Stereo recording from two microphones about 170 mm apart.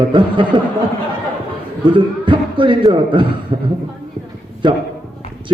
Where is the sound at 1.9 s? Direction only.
30° right (ahead or behind).